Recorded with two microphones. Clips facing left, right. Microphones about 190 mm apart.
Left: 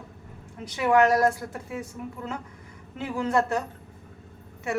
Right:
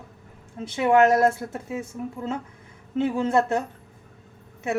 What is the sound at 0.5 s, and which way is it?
A woman's voice, 25° right (ahead or behind).